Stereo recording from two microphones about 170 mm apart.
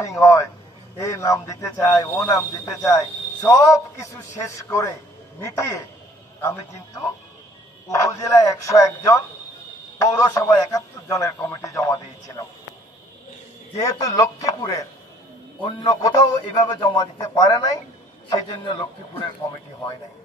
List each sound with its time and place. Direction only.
0.2 s a man's voice: 20° left (ahead or behind)
13.7 s a man's voice: 20° left (ahead or behind)